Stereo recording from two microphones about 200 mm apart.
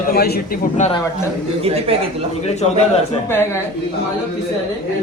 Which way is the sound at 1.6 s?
30° right (ahead or behind).